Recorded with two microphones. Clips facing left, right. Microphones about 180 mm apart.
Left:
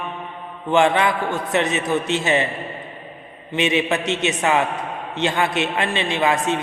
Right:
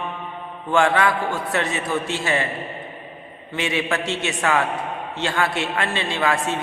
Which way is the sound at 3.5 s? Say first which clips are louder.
Left 4 dB; 20° left (ahead or behind).